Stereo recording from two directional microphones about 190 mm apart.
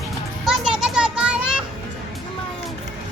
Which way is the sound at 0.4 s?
5° right (ahead or behind).